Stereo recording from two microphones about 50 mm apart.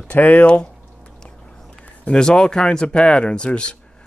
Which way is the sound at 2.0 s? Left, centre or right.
Centre.